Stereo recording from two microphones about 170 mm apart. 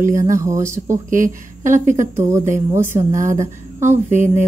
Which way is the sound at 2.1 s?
15° right (ahead or behind).